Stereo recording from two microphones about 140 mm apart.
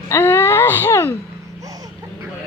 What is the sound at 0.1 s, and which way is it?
Wail, 15° left (ahead or behind).